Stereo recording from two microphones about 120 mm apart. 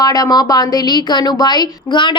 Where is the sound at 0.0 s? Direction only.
30° left (ahead or behind).